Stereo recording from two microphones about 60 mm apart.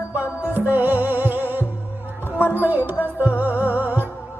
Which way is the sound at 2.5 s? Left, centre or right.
Right.